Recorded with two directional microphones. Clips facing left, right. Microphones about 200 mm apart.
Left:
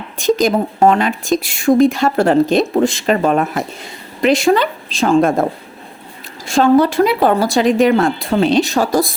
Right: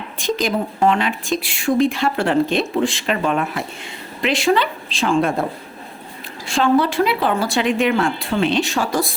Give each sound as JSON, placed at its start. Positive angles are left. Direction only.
{"t": 0.2, "sound": "a woman's voice", "side_deg": 45}
{"t": 6.5, "sound": "a woman's voice", "side_deg": 40}